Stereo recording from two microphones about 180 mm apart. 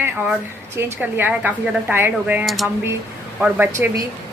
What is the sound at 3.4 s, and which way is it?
Speech, 10° right (ahead or behind).